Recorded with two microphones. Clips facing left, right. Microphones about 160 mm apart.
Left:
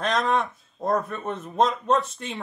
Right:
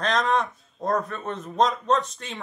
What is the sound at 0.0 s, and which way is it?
A man's voice, centre (ahead or behind).